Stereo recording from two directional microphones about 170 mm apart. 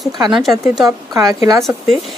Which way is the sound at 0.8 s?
20° right (ahead or behind).